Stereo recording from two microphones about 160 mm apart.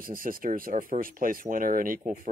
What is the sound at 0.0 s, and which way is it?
Speech, 60° right (ahead or behind).